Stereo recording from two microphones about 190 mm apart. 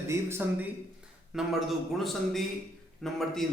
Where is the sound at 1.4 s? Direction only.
Centre (ahead or behind).